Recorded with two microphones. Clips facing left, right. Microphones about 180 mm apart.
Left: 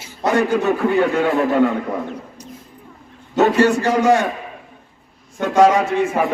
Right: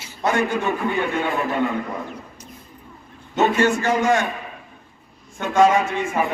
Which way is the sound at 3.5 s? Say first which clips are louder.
Left 4 dB; 35° left (ahead or behind).